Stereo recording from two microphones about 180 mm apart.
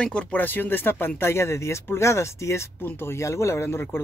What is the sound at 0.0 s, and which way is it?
Speech, 5° left (ahead or behind).